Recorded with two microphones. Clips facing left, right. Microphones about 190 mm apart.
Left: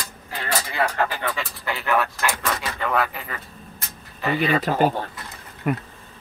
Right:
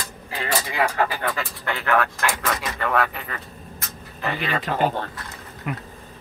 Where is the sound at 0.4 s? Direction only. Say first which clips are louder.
Right 1 dB; 10° right (ahead or behind).